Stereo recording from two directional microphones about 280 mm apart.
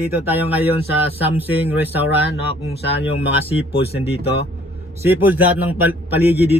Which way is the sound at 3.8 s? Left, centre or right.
Left.